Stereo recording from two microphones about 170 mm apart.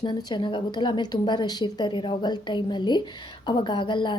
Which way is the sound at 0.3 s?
30° left (ahead or behind).